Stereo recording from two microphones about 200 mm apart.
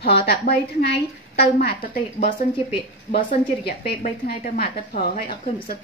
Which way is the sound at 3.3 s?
45° left (ahead or behind).